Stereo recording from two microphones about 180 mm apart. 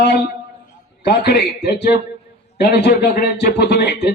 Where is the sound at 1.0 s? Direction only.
65° left (ahead or behind).